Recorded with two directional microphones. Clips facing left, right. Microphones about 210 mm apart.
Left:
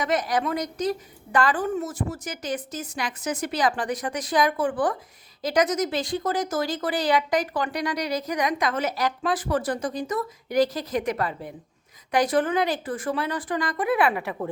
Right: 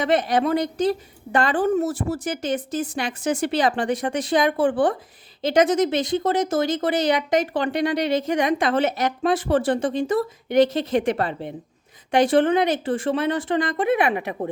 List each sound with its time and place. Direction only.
0.0 s speech: 30° right (ahead or behind)